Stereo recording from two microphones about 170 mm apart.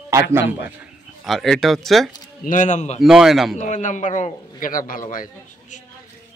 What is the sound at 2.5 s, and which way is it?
Speech, 45° left (ahead or behind).